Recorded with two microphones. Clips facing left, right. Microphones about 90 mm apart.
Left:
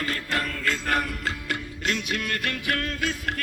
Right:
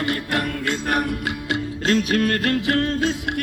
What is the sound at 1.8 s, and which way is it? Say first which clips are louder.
Music: right 9 dB; 40° right (ahead or behind).